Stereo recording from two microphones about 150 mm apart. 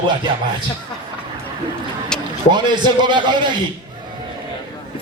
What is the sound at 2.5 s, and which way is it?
A man's voice, 30° right (ahead or behind).